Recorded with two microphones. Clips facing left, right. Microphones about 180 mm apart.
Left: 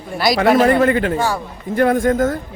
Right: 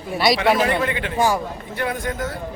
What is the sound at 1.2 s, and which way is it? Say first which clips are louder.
Speech: right 1 dB; 15° right (ahead or behind).